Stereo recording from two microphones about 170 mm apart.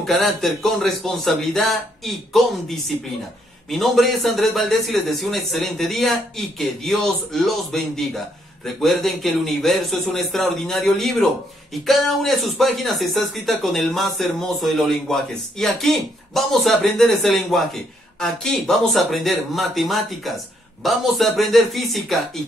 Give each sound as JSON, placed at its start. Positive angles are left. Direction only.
{"t": 0.0, "sound": "speech", "side_deg": 0}